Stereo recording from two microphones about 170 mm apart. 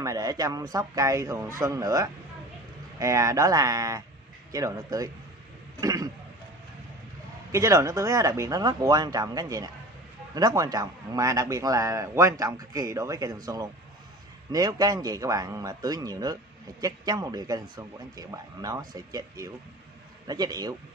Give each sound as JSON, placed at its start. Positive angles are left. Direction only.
{"t": 0.0, "sound": "a man's voice", "side_deg": -20}
{"t": 5.8, "sound": "a sound", "side_deg": -20}
{"t": 7.5, "sound": "a man's voice", "side_deg": -20}